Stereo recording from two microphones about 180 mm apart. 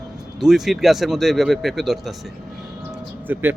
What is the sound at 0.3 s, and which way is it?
Speech, centre (ahead or behind).